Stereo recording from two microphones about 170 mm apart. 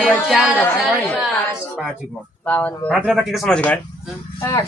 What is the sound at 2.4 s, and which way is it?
Speech, 10° left (ahead or behind).